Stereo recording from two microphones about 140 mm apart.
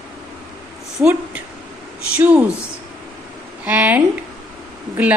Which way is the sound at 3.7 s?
10° right (ahead or behind).